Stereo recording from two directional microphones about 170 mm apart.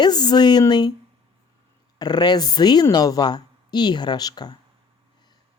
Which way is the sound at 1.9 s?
25° left (ahead or behind).